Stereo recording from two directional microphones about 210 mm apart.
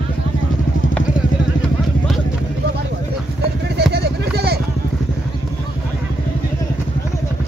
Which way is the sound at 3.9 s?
50° right (ahead or behind).